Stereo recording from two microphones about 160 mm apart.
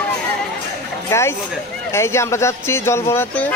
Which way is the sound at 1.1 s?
15° left (ahead or behind).